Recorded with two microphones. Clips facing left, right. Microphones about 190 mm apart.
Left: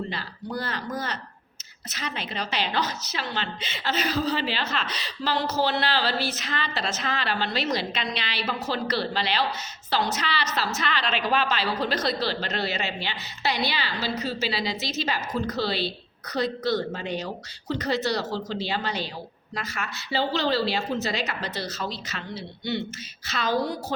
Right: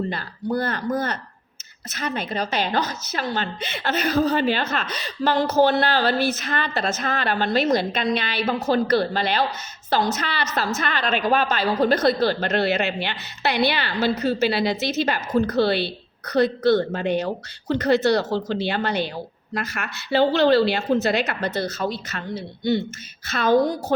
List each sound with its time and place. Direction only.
0.1 s a woman's voice: 50° right (ahead or behind)